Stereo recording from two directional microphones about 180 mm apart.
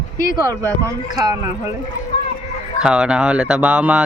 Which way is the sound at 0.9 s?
20° right (ahead or behind).